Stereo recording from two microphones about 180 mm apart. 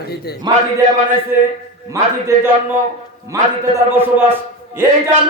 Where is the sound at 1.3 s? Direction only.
10° right (ahead or behind).